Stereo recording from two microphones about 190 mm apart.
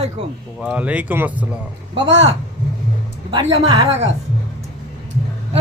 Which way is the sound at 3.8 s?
35° right (ahead or behind).